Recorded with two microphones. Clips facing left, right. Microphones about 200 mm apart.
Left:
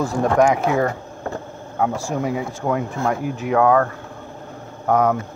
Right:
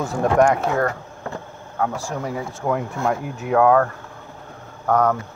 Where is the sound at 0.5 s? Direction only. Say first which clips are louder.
Left 1 dB; 5° left (ahead or behind).